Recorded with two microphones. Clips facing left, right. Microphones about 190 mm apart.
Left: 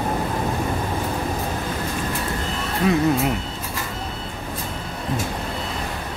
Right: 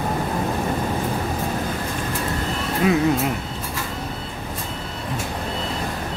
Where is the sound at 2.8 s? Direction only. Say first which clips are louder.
Right 1 dB; 5° right (ahead or behind).